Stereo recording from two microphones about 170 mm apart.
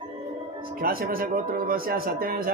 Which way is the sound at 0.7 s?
60° right (ahead or behind).